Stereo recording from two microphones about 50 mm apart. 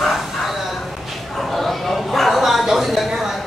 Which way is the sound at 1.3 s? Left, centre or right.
Centre.